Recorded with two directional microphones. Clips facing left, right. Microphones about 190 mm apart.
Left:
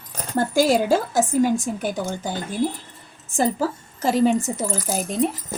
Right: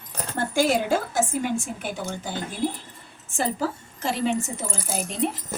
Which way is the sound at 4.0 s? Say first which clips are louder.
Left 7 dB; 40° left (ahead or behind).